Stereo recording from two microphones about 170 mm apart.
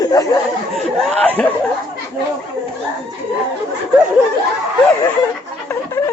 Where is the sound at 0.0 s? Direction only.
20° left (ahead or behind).